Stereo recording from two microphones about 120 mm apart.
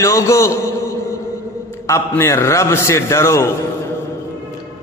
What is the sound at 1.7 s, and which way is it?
Mantra, 20° left (ahead or behind).